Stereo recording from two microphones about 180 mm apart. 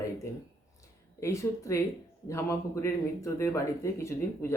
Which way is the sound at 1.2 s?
15° left (ahead or behind).